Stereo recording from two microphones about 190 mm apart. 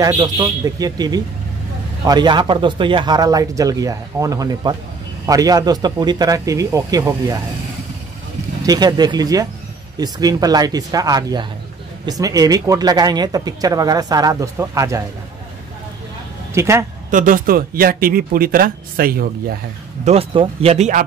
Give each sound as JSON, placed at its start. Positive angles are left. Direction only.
{"t": 0.0, "sound": "speech", "side_deg": -20}
{"t": 8.6, "sound": "speech", "side_deg": -20}
{"t": 16.5, "sound": "a man's voice", "side_deg": -15}
{"t": 17.1, "sound": "speech", "side_deg": -45}
{"t": 20.1, "sound": "speech", "side_deg": -30}